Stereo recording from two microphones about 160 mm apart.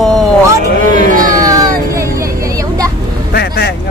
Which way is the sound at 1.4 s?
20° right (ahead or behind).